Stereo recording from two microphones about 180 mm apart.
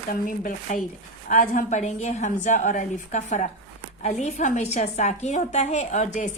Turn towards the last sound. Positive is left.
turn(degrees=40)  # may be behind; listen again after turning